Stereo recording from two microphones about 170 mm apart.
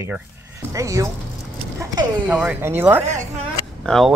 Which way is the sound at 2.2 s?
10° right (ahead or behind).